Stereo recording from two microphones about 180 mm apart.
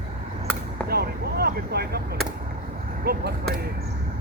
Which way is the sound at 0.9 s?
60° right (ahead or behind).